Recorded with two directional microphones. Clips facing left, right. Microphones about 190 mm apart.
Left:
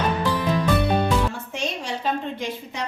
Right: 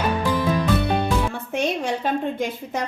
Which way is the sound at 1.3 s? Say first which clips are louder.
Right 5 dB; 55° right (ahead or behind).